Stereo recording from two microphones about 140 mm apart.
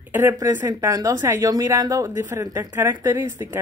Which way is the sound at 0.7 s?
25° right (ahead or behind).